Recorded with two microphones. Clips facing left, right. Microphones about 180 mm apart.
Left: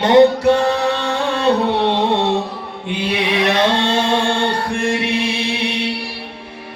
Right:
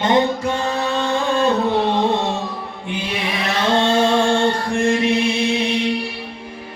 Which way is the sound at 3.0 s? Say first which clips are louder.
Left 8 dB; 65° left (ahead or behind).